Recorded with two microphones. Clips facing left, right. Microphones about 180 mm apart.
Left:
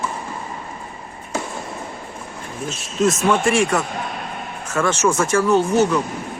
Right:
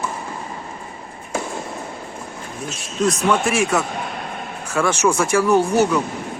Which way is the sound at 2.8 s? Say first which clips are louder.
Left 1 dB; centre (ahead or behind).